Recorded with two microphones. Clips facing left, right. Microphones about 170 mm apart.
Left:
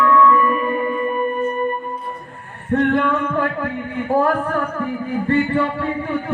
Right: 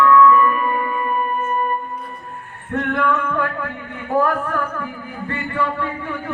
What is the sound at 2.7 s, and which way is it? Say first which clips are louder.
Singing: left 4 dB; 30° left (ahead or behind).